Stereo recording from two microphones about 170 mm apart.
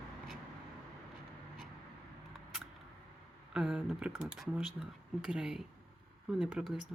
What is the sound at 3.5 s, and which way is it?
Speech, 5° right (ahead or behind).